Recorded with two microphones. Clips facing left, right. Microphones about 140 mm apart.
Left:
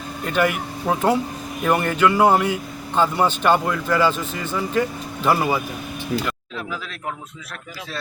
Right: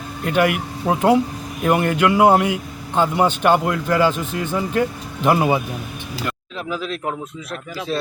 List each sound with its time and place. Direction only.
0.3 s a man's voice: 10° right (ahead or behind)
6.7 s speech: 20° right (ahead or behind)